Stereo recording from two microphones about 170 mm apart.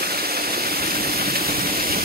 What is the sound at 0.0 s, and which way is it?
Vehicle, 65° right (ahead or behind).